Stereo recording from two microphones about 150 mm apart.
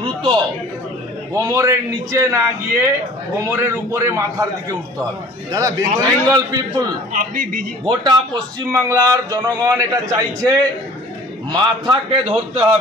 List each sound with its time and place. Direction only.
0.0 s a sound: 35° right (ahead or behind)
1.3 s a man's voice: 20° right (ahead or behind)
7.1 s a man's voice: 65° right (ahead or behind)
7.8 s a man's voice: 30° right (ahead or behind)
11.5 s a man's voice: 35° right (ahead or behind)